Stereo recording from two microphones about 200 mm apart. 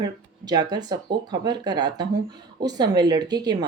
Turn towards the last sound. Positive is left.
turn(degrees=-20)  # may be behind; listen again after turning